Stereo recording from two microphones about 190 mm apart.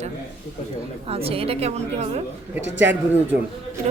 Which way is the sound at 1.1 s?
30° right (ahead or behind).